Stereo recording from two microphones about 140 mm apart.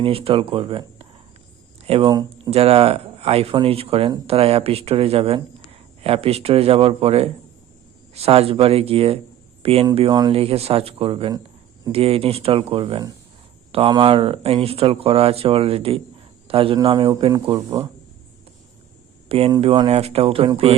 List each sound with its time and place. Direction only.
0.0 s speech: 40° right (ahead or behind)
2.0 s speech: 30° right (ahead or behind)
2.5 s speech: 45° right (ahead or behind)
10.1 s speech: 30° right (ahead or behind)
10.3 s speech: 45° right (ahead or behind)
16.8 s speech: 30° right (ahead or behind)
19.3 s speech: 45° right (ahead or behind)